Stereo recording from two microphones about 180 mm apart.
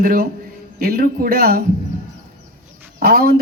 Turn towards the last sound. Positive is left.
turn(degrees=-55)  # may be behind; listen again after turning